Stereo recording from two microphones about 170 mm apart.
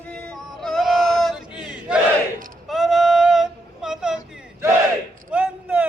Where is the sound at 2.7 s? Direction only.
Centre (ahead or behind).